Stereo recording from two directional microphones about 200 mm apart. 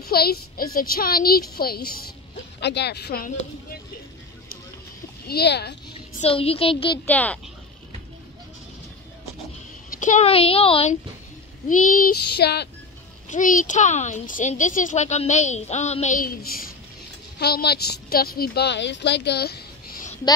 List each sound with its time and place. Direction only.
0.1 s a child's voice: 50° left (ahead or behind)
5.3 s speech: 55° left (ahead or behind)
6.2 s speech: 30° left (ahead or behind)
7.1 s speech: 10° left (ahead or behind)
9.8 s a woman's voice: 40° left (ahead or behind)
11.7 s a child's voice: 40° left (ahead or behind)
13.3 s a woman's voice: 40° left (ahead or behind)